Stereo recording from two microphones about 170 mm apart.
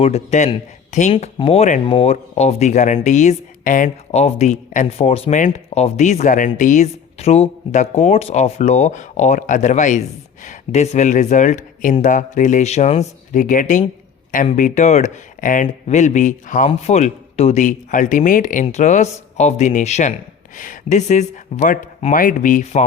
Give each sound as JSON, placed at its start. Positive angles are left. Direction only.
{"t": 0.0, "sound": "speech", "side_deg": 40}
{"t": 1.1, "sound": "speech", "side_deg": 35}